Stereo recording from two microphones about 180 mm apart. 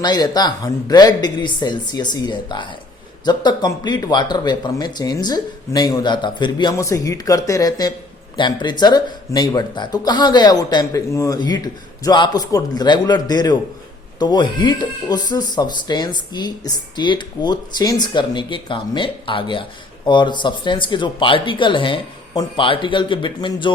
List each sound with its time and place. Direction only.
0.0 s speech: 25° left (ahead or behind)